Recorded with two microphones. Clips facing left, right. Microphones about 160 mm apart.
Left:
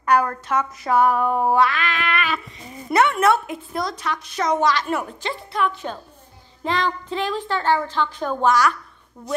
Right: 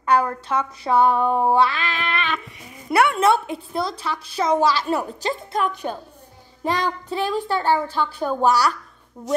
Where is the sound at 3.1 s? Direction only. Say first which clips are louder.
Even; 30° right (ahead or behind).